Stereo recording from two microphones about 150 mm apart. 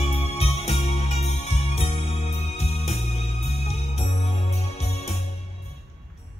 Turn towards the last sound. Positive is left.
turn(degrees=45)  # may be behind; listen again after turning